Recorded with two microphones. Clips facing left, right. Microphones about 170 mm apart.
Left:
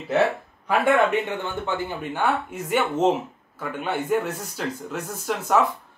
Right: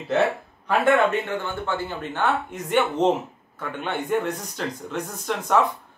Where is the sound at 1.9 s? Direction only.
10° left (ahead or behind).